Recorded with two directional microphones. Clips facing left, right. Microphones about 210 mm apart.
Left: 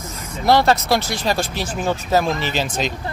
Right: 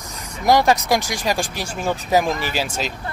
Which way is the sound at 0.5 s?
15° right (ahead or behind).